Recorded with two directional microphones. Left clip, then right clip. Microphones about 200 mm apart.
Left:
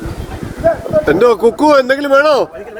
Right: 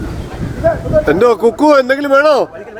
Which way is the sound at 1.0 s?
5° right (ahead or behind).